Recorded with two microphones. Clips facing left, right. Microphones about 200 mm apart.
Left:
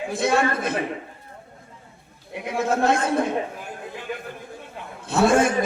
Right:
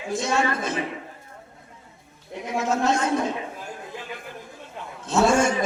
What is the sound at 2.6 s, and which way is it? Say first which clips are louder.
Speech: left 2 dB; 55° left (ahead or behind).